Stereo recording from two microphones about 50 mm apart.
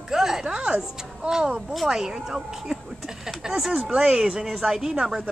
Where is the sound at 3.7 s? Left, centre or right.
Centre.